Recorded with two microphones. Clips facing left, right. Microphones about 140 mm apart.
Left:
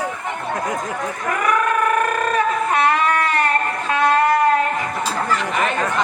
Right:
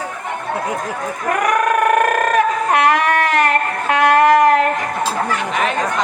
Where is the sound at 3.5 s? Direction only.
75° right (ahead or behind).